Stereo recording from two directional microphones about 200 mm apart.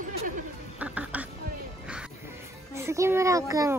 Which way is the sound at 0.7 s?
5° right (ahead or behind).